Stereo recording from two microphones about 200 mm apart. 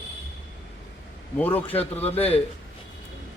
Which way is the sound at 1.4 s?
10° left (ahead or behind).